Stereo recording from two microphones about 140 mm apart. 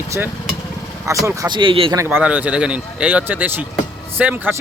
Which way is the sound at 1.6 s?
40° right (ahead or behind).